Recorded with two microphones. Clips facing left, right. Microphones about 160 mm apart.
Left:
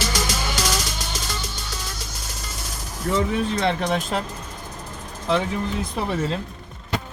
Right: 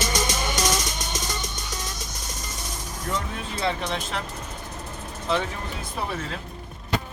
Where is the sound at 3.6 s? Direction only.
55° left (ahead or behind).